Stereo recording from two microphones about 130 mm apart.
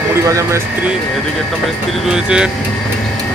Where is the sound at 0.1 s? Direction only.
20° right (ahead or behind).